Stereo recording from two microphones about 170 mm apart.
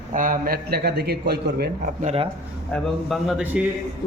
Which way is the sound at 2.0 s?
40° right (ahead or behind).